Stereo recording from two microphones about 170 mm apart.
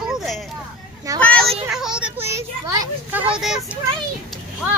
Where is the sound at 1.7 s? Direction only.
5° right (ahead or behind).